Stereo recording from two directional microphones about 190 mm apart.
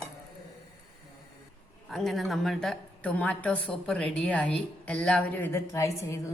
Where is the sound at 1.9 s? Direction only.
Centre (ahead or behind).